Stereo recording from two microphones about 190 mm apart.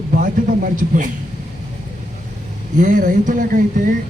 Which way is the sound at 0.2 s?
45° right (ahead or behind).